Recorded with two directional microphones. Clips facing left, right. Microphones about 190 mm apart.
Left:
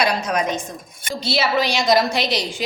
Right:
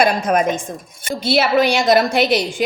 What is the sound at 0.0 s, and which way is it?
A woman's voice, 50° right (ahead or behind).